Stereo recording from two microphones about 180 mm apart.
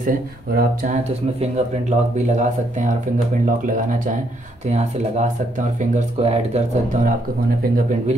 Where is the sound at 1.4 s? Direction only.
40° right (ahead or behind).